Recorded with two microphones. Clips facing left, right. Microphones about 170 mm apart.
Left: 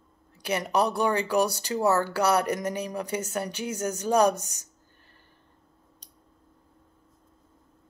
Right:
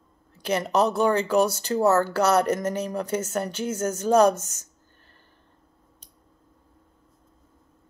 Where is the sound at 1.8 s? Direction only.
45° right (ahead or behind).